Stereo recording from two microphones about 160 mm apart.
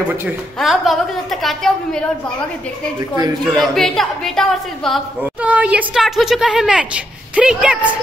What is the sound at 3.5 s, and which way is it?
A woman's voice, centre (ahead or behind).